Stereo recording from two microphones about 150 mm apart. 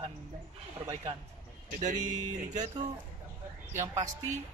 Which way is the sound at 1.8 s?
55° right (ahead or behind).